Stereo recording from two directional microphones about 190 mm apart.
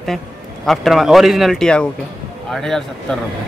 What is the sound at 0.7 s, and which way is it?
Speech, centre (ahead or behind).